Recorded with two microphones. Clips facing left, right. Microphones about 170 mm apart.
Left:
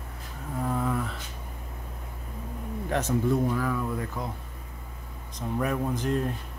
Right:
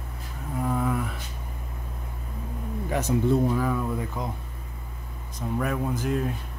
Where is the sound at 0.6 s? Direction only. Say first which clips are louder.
Right 2 dB; 5° right (ahead or behind).